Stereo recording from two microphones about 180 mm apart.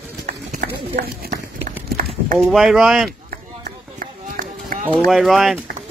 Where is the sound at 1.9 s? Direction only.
50° right (ahead or behind).